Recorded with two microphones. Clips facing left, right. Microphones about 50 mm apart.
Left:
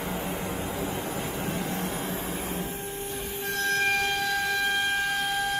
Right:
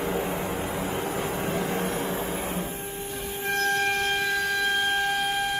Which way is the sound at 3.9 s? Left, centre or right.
Right.